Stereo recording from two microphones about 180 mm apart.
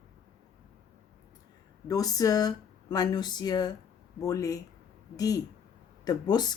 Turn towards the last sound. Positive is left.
turn(degrees=25)  # may be behind; listen again after turning